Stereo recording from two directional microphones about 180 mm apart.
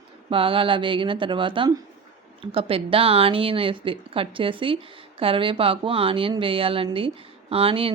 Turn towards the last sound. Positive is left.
turn(degrees=-30)  # may be behind; listen again after turning